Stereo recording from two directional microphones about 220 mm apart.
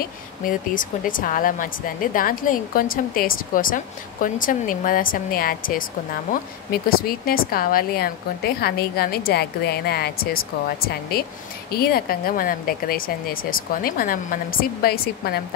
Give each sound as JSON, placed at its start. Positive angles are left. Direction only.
{"t": 0.0, "sound": "a woman's voice", "side_deg": 40}
{"t": 11.7, "sound": "speech", "side_deg": 45}